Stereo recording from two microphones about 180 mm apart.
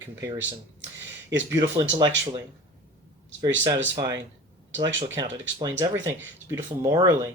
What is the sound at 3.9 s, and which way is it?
Speech, 25° right (ahead or behind).